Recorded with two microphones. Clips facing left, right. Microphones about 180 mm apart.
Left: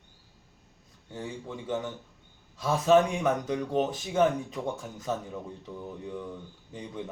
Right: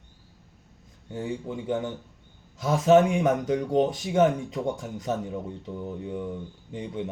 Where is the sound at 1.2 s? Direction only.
20° right (ahead or behind).